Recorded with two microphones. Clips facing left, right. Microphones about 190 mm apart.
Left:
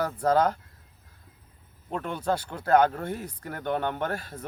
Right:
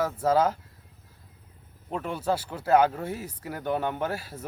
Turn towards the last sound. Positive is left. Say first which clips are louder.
# even
turn(degrees=-5)  # may be behind; listen again after turning